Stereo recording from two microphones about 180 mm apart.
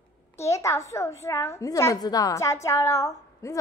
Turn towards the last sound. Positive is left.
turn(degrees=15)  # may be behind; listen again after turning